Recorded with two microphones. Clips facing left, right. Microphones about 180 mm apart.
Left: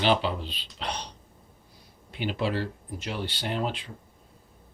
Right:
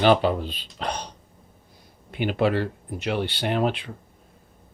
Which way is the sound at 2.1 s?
55° right (ahead or behind).